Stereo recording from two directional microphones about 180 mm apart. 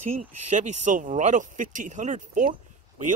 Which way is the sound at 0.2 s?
40° right (ahead or behind).